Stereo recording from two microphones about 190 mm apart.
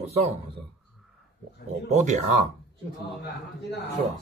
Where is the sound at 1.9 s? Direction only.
40° right (ahead or behind).